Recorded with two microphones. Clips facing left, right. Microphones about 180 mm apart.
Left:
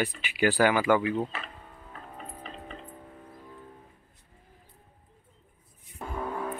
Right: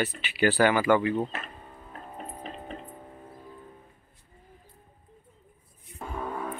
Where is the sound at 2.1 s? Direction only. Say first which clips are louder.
Right 4 dB; 40° right (ahead or behind).